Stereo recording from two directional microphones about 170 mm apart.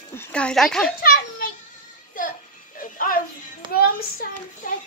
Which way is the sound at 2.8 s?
55° left (ahead or behind).